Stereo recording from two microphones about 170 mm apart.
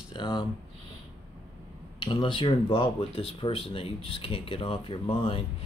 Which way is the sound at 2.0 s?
30° left (ahead or behind).